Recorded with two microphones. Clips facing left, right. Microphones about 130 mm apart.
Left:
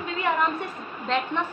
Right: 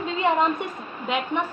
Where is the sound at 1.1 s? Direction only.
10° right (ahead or behind).